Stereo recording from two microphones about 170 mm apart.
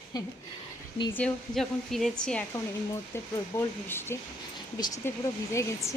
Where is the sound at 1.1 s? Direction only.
5° left (ahead or behind).